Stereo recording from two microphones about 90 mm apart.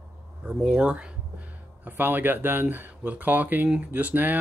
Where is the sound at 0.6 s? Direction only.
10° right (ahead or behind).